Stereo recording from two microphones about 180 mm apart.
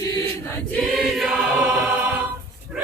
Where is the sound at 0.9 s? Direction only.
Centre (ahead or behind).